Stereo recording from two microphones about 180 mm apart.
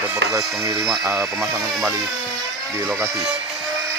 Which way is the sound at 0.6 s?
20° right (ahead or behind).